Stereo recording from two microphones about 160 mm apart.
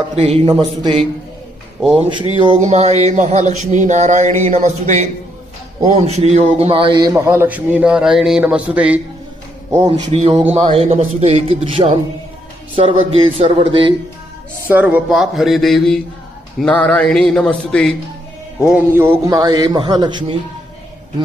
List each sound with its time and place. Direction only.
0.1 s a man's voice: 40° right (ahead or behind)
0.5 s a man's voice: 30° right (ahead or behind)
2.3 s a man's voice: 35° right (ahead or behind)
2.6 s a sound: 45° right (ahead or behind)
5.9 s a man's voice: 45° right (ahead or behind); by 9.0 s 10° right (ahead or behind)
9.8 s a man's voice: 40° right (ahead or behind)
14.7 s a sound: 10° right (ahead or behind)
18.7 s a man's voice: 15° right (ahead or behind)